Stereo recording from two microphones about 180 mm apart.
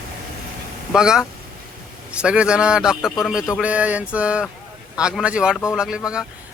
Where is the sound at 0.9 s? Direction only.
5° right (ahead or behind).